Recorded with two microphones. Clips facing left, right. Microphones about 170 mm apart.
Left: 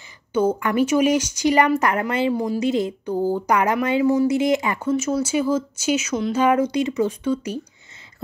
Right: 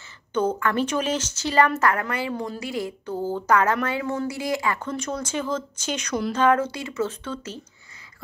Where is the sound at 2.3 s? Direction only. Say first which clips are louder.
Left 7 dB; 10° left (ahead or behind).